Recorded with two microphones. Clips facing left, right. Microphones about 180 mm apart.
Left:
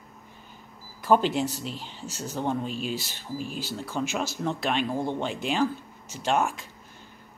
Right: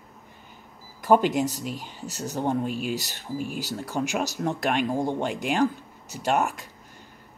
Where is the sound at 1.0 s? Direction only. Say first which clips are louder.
Right 2 dB; 15° right (ahead or behind).